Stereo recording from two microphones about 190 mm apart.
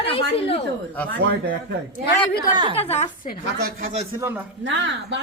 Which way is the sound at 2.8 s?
35° left (ahead or behind).